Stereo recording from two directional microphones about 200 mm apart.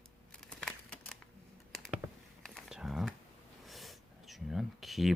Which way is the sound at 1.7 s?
Centre (ahead or behind).